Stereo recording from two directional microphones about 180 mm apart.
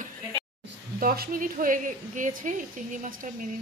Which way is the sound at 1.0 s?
55° right (ahead or behind).